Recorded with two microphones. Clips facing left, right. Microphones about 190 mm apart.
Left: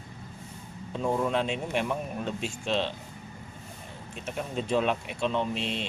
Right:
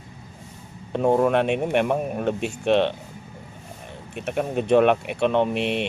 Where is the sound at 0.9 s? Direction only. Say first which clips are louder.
Right 8 dB; 65° right (ahead or behind).